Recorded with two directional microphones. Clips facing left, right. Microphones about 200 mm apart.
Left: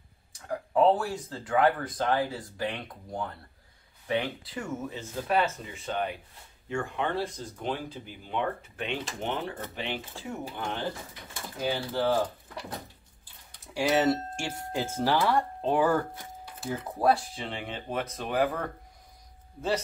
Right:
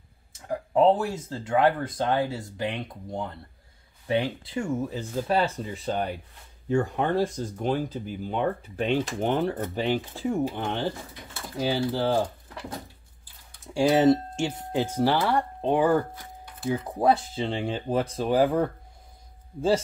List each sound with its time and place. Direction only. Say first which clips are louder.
0.3 s speech: right 3 dB; 25° right (ahead or behind)
13.7 s speech: right 5 dB; 25° right (ahead or behind)